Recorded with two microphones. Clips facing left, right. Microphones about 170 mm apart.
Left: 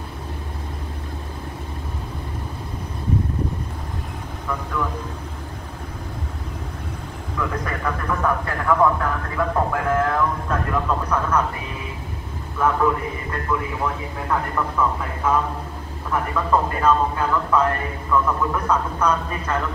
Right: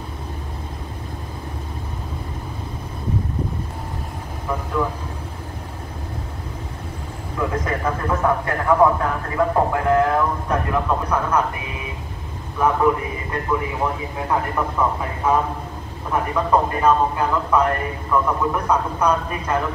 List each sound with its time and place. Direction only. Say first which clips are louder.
7.3 s a man's voice: right 3 dB; 20° right (ahead or behind)
12.5 s a man's voice: right 2 dB; 15° right (ahead or behind)